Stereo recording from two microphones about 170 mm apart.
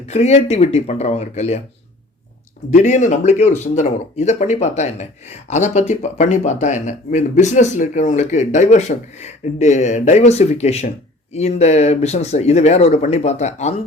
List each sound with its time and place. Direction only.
0.0 s speech: 40° left (ahead or behind)
2.6 s speech: 45° left (ahead or behind)